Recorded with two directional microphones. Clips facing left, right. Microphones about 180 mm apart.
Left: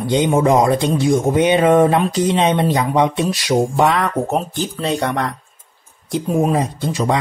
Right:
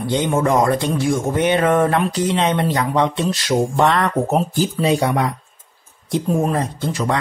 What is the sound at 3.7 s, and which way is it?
Speech, 5° left (ahead or behind).